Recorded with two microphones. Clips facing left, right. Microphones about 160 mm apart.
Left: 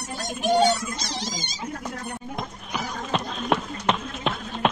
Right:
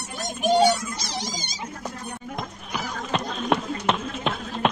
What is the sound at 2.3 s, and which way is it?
Run, centre (ahead or behind).